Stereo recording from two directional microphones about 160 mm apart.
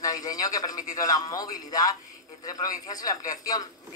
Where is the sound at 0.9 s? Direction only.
20° left (ahead or behind).